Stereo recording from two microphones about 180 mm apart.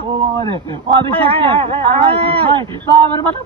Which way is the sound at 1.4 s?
30° right (ahead or behind).